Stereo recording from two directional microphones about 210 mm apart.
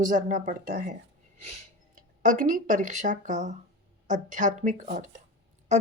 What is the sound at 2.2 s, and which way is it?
Speech, 40° right (ahead or behind).